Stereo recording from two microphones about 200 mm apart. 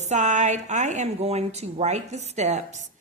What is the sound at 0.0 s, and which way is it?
A woman's voice, 35° right (ahead or behind).